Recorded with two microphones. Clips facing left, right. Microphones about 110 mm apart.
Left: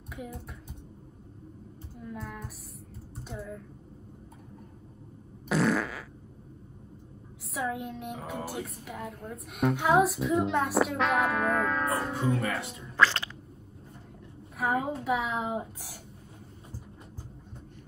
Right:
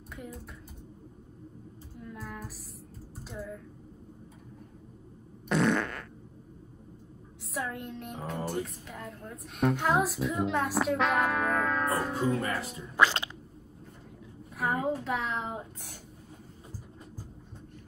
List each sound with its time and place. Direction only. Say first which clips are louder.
2.0 s music: left 2 dB; centre (ahead or behind)
3.2 s typing: even; centre (ahead or behind)
5.5 s fart: even; centre (ahead or behind)
7.5 s speech: left 3 dB; centre (ahead or behind)
12.9 s speech: even; 15° right (ahead or behind)
14.6 s a sound: left 1 dB; centre (ahead or behind)
15.0 s speech: left 3 dB; 5° left (ahead or behind)